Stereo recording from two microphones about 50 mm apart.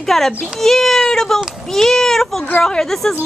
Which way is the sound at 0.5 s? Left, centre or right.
Centre.